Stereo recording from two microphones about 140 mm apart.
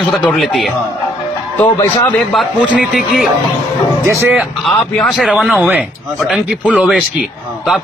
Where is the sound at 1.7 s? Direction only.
30° left (ahead or behind).